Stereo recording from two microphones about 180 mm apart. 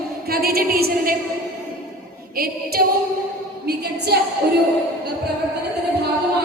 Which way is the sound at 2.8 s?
55° right (ahead or behind).